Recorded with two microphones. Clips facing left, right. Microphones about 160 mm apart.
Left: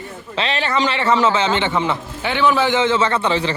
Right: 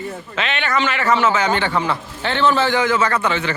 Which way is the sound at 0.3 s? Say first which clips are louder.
Left 2 dB; 35° left (ahead or behind).